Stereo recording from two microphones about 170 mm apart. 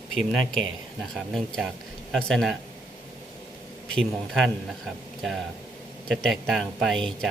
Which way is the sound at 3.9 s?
Centre (ahead or behind).